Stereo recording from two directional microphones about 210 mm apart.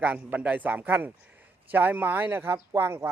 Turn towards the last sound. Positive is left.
turn(degrees=-10)  # may be behind; listen again after turning